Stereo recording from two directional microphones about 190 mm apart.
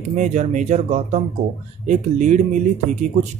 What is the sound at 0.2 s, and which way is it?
Speech, 40° right (ahead or behind).